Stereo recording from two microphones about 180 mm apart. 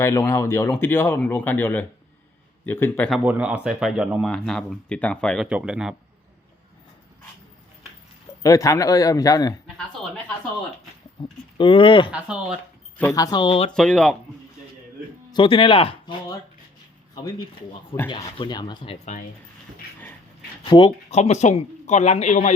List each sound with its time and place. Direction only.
0.0 s speech: 15° left (ahead or behind)
3.2 s speech: 5° right (ahead or behind)
8.4 s speech: 20° left (ahead or behind)
11.2 s speech: 25° left (ahead or behind)
12.1 s speech: 5° right (ahead or behind)
13.1 s speech: 20° left (ahead or behind)
13.7 s speech: 5° left (ahead or behind)
15.3 s speech: 30° left (ahead or behind)
18.1 s speech: 25° left (ahead or behind)
20.6 s speech: 25° left (ahead or behind)